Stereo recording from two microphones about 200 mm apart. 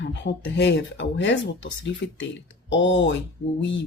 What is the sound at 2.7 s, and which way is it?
Speech, 65° left (ahead or behind).